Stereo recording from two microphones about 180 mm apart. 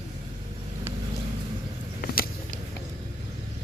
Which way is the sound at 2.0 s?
55° left (ahead or behind).